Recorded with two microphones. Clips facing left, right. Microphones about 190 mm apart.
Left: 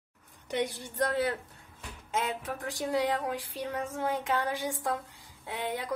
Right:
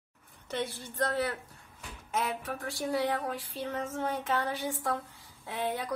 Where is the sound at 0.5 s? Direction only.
15° left (ahead or behind).